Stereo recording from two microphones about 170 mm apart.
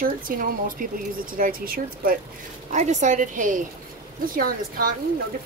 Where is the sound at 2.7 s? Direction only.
45° right (ahead or behind).